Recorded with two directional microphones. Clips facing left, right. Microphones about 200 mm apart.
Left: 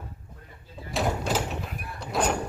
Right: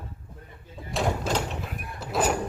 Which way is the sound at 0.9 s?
Centre (ahead or behind).